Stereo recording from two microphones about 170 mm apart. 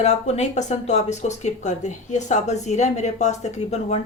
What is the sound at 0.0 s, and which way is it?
Speech, 40° left (ahead or behind).